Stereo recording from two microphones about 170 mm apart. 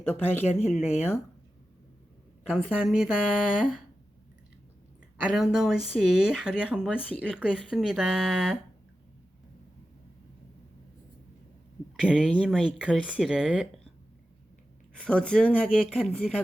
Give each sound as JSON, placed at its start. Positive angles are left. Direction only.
{"t": 0.0, "sound": "speech", "side_deg": 10}
{"t": 0.4, "sound": "speech", "side_deg": 40}
{"t": 2.4, "sound": "speech", "side_deg": -5}
{"t": 5.3, "sound": "speech", "side_deg": -5}
{"t": 11.9, "sound": "speech", "side_deg": -5}
{"t": 12.6, "sound": "speech", "side_deg": -5}
{"t": 14.9, "sound": "speech", "side_deg": 5}